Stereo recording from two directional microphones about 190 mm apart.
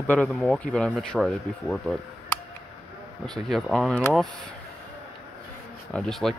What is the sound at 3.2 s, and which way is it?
Speech, centre (ahead or behind).